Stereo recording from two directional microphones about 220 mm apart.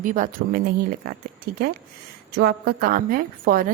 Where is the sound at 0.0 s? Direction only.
35° right (ahead or behind).